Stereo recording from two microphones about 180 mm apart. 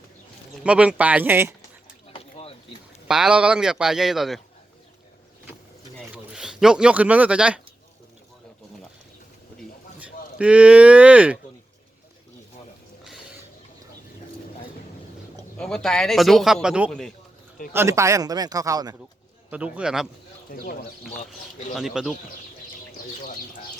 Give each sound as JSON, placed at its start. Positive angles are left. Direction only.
{"t": 0.6, "sound": "speech", "side_deg": -5}
{"t": 2.1, "sound": "boat", "side_deg": 35}
{"t": 3.1, "sound": "a man's voice", "side_deg": -5}
{"t": 6.3, "sound": "speech", "side_deg": -5}
{"t": 10.3, "sound": "speech", "side_deg": -5}
{"t": 15.5, "sound": "a man's voice", "side_deg": 5}
{"t": 19.5, "sound": "speech", "side_deg": -5}
{"t": 21.8, "sound": "a man's voice", "side_deg": 0}